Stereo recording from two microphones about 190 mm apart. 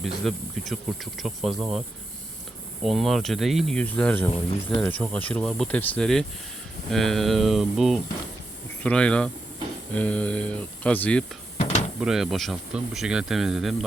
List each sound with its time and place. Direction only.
0.0 s speech: centre (ahead or behind)
2.8 s speech: centre (ahead or behind)
11.5 s a sound: 35° left (ahead or behind)
11.9 s speech: centre (ahead or behind)